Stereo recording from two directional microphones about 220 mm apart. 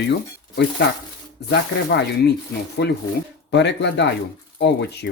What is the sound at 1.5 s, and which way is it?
Speech, 50° left (ahead or behind).